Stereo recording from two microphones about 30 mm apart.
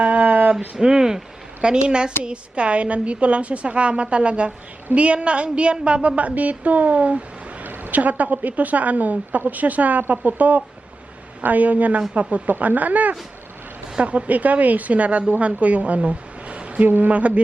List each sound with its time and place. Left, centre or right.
0.2 s a sound: right
0.8 s a woman's voice: right
7.6 s a woman's voice: right
14.0 s a woman's voice: right
16.8 s speech: right
17.1 s speech: right